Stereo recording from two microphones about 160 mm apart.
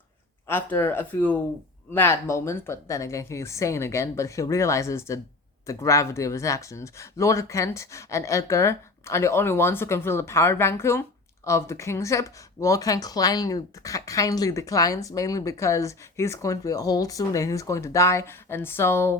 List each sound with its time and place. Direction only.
0.4 s speech: 15° left (ahead or behind)